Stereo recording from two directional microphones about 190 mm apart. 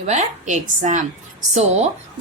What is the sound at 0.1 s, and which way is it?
A woman's voice, 40° right (ahead or behind).